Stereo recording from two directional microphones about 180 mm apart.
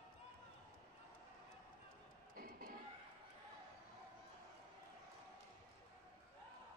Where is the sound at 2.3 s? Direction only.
55° right (ahead or behind).